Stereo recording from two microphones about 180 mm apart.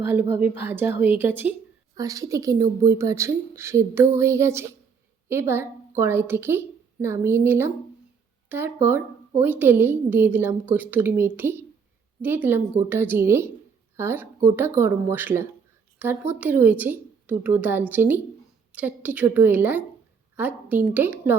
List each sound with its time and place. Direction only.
0.0 s speech: 10° right (ahead or behind)